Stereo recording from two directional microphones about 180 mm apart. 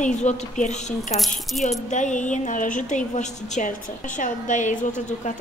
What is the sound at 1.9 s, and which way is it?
A woman's voice, 45° left (ahead or behind).